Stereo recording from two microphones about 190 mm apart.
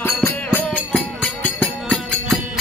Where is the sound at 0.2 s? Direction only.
10° left (ahead or behind).